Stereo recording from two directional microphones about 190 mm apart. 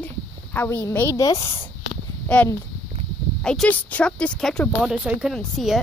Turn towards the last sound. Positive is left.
turn(degrees=0)  # may be behind; listen again after turning